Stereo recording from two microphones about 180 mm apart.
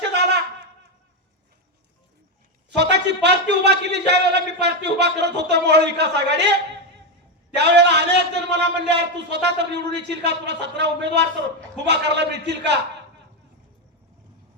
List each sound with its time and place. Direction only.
0.0 s wind instrument: 70° right (ahead or behind)
2.6 s a man's voice: 70° right (ahead or behind)